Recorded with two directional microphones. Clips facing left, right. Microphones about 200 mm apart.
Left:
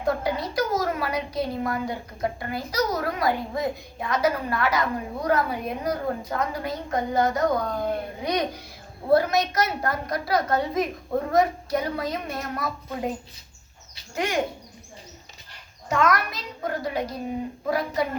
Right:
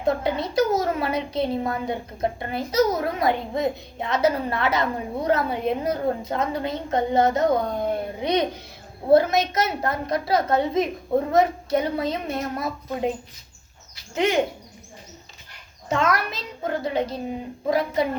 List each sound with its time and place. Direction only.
0.0 s a woman's voice: 25° right (ahead or behind)
14.2 s a woman's voice: 20° right (ahead or behind)
15.9 s a woman's voice: 25° right (ahead or behind)